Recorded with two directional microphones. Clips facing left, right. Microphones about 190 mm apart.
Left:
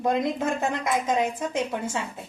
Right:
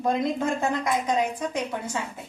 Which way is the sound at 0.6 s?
20° left (ahead or behind).